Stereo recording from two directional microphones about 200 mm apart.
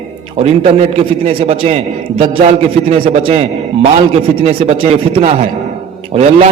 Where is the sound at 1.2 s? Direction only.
30° right (ahead or behind).